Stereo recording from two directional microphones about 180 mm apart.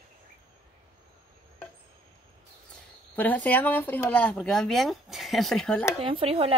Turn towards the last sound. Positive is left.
turn(degrees=-35)  # may be behind; listen again after turning